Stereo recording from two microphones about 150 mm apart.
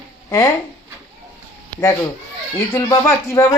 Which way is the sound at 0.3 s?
20° left (ahead or behind).